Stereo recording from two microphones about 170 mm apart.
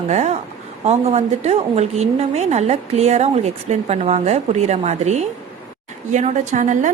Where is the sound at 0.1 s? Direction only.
40° right (ahead or behind).